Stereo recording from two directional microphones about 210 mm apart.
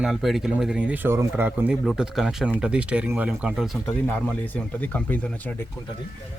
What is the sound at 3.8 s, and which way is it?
Speech, 10° left (ahead or behind).